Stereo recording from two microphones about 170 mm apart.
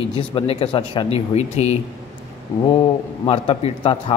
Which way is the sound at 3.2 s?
35° left (ahead or behind).